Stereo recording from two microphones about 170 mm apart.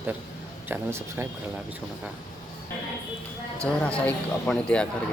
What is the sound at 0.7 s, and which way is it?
Speech, 15° right (ahead or behind).